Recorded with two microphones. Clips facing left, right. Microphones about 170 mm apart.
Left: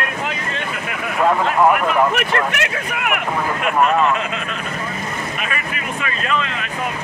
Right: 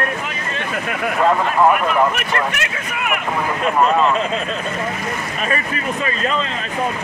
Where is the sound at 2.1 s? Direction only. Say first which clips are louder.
Left 2 dB; 65° left (ahead or behind).